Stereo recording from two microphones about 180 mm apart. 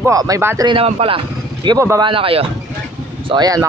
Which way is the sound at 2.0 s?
30° right (ahead or behind).